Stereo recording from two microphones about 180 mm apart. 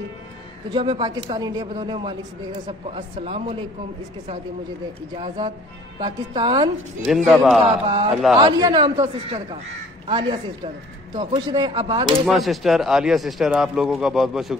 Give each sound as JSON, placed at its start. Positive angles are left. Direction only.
{"t": 0.7, "sound": "a woman's voice", "side_deg": -25}
{"t": 5.1, "sound": "a woman's voice", "side_deg": -30}
{"t": 7.0, "sound": "speech", "side_deg": 0}
{"t": 7.6, "sound": "a woman's voice", "side_deg": -30}
{"t": 12.3, "sound": "speech", "side_deg": 0}